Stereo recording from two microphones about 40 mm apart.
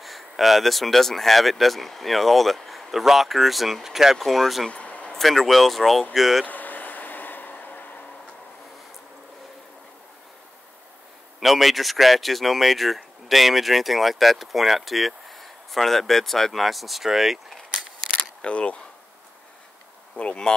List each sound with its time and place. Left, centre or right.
0.0 s speech: centre
4.6 s a sound: left
5.1 s speech: centre
6.4 s vehicle: left
11.3 s speech: centre
18.4 s speech: left
20.5 s speech: centre